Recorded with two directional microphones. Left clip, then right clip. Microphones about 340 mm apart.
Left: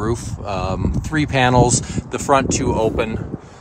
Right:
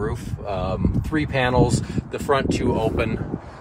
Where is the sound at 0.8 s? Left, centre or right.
Left.